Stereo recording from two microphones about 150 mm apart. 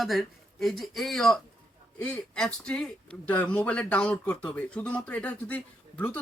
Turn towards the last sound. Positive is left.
turn(degrees=10)  # may be behind; listen again after turning